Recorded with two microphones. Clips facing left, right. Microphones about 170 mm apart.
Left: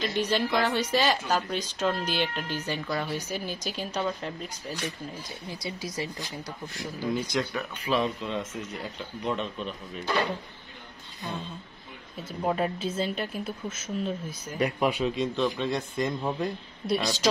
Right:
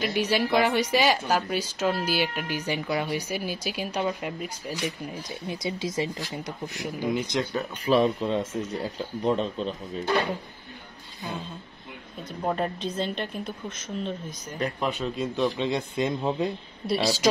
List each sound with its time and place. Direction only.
0.0 s speech: 10° right (ahead or behind)
7.5 s speech: 40° right (ahead or behind)
11.2 s a woman's voice: centre (ahead or behind)
15.1 s speech: 10° right (ahead or behind)
16.8 s speech: 5° right (ahead or behind)